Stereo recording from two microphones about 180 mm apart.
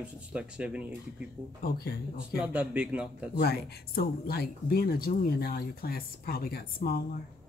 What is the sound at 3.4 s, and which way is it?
Speech, 60° left (ahead or behind).